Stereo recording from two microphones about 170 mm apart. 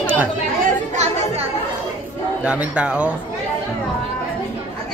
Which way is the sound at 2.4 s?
5° right (ahead or behind).